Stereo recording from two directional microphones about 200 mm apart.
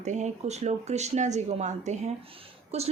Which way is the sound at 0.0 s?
35° right (ahead or behind).